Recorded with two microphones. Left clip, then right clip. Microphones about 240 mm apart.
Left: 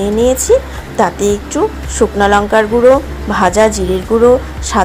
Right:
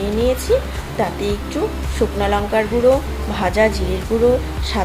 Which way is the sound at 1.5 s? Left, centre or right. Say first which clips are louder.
Left 7 dB; left.